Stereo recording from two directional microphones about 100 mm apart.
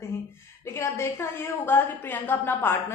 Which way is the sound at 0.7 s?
25° left (ahead or behind).